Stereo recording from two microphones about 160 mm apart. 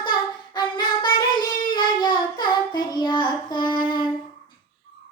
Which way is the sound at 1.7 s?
30° left (ahead or behind).